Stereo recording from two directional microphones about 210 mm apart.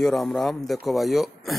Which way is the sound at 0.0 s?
Centre (ahead or behind).